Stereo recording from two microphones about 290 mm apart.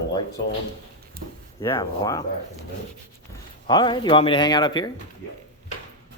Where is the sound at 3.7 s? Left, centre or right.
Centre.